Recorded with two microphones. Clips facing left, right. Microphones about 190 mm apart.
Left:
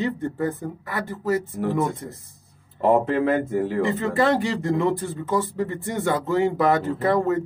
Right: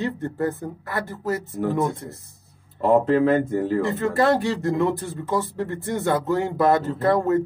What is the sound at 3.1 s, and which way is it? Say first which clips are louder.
Speech: right 3 dB; 10° left (ahead or behind).